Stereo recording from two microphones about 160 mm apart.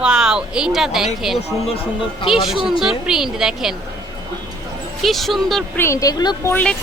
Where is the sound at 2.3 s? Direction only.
Centre (ahead or behind).